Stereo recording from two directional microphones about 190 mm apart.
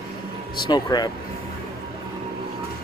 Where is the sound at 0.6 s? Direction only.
20° left (ahead or behind).